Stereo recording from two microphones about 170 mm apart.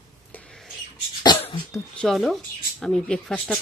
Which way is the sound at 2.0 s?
Centre (ahead or behind).